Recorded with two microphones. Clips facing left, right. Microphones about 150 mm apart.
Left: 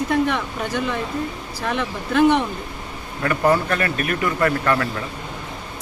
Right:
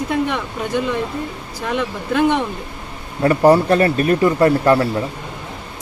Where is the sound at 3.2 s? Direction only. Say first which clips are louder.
Right 7 dB; 30° right (ahead or behind).